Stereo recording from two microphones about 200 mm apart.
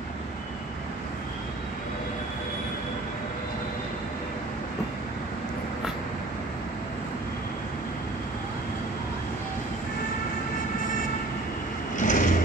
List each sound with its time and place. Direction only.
12.0 s vehicle: 40° left (ahead or behind)